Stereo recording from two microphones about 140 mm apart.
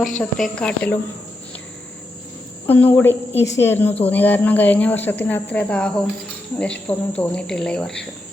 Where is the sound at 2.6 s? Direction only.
10° left (ahead or behind).